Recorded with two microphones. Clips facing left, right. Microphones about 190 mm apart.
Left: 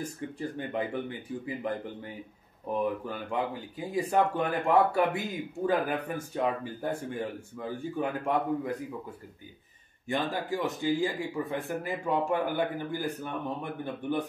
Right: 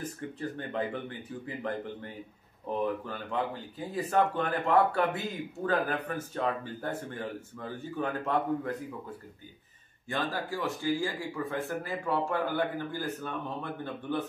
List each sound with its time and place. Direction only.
0.0 s speech: 15° left (ahead or behind)
2.7 s speech: 10° left (ahead or behind)
10.3 s speech: 20° left (ahead or behind)